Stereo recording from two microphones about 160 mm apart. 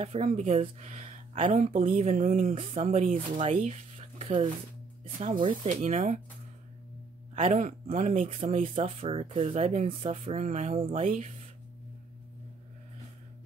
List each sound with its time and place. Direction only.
0.0 s speech: 40° right (ahead or behind)
5.6 s speech: 45° right (ahead or behind)
7.3 s speech: 45° right (ahead or behind)